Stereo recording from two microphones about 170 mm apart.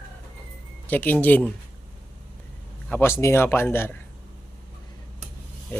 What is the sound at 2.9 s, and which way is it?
Speech, 15° left (ahead or behind).